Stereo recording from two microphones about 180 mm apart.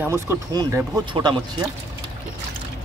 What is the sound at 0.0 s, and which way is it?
Speech, 15° right (ahead or behind).